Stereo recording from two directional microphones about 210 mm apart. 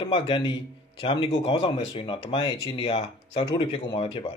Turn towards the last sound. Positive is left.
turn(degrees=25)  # may be behind; listen again after turning